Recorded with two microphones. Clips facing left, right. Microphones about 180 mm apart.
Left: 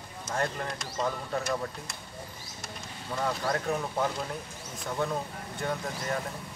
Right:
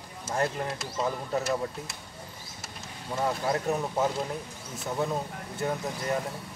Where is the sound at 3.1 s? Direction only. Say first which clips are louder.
Right 2 dB; 20° right (ahead or behind).